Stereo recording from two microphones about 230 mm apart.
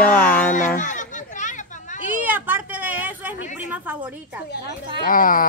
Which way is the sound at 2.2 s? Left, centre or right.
Centre.